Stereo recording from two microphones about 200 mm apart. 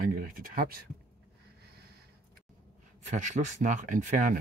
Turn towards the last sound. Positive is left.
turn(degrees=-40)  # may be behind; listen again after turning